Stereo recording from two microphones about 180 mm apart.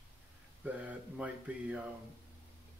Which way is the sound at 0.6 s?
10° right (ahead or behind).